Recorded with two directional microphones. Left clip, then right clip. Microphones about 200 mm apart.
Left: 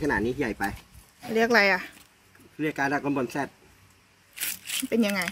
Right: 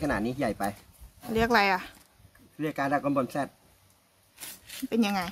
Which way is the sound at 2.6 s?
20° right (ahead or behind).